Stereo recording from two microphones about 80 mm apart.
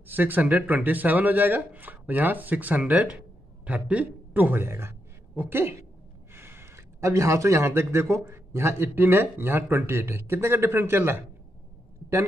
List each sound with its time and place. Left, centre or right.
0.1 s a man's voice: right